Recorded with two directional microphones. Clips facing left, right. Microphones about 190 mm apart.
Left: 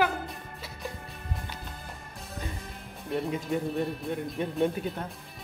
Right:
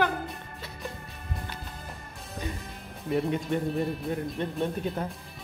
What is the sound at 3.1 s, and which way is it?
Speech, centre (ahead or behind).